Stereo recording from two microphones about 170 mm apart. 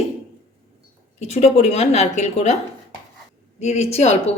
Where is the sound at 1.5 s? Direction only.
40° left (ahead or behind).